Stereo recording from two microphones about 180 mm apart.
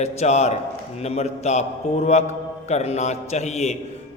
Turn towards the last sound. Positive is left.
turn(degrees=40)  # may be behind; listen again after turning